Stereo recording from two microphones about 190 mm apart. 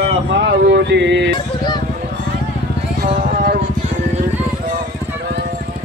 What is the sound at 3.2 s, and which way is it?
Music, 50° right (ahead or behind).